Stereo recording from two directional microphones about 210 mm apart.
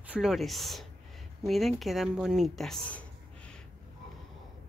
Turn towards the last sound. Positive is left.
turn(degrees=0)  # may be behind; listen again after turning